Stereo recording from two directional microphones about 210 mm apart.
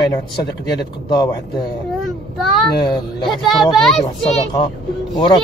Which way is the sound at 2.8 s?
20° left (ahead or behind).